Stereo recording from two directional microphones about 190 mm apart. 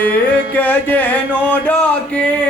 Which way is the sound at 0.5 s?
10° left (ahead or behind).